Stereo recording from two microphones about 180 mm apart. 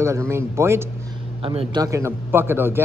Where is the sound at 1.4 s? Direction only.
30° right (ahead or behind).